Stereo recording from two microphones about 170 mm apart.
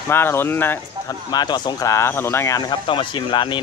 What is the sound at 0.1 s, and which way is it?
Speech, 15° left (ahead or behind).